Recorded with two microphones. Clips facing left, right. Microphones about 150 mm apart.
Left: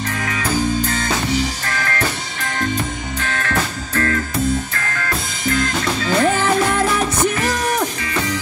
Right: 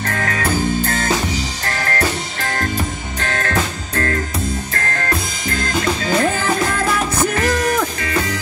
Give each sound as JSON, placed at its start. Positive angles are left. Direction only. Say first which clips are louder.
{"t": 0.0, "sound": "music", "louder": "right 2 dB", "side_deg": -55}
{"t": 1.7, "sound": "music", "louder": "right 2 dB", "side_deg": -40}